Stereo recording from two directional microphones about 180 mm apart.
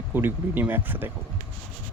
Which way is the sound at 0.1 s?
10° right (ahead or behind).